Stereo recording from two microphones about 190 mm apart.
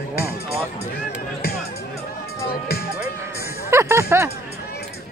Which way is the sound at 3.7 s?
15° right (ahead or behind).